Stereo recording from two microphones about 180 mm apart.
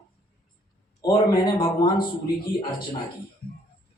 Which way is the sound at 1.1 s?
25° left (ahead or behind).